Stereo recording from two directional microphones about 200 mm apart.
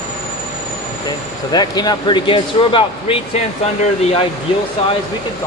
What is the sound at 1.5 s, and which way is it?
Speech, 20° left (ahead or behind).